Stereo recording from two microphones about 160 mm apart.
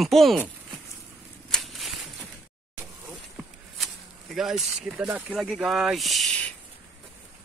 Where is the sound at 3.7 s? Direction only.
Centre (ahead or behind).